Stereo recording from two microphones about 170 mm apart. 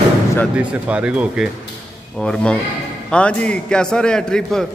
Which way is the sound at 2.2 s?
5° left (ahead or behind).